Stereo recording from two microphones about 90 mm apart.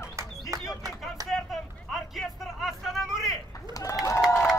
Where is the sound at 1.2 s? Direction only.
40° right (ahead or behind).